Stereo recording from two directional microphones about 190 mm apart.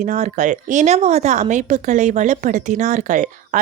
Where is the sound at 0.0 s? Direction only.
40° right (ahead or behind).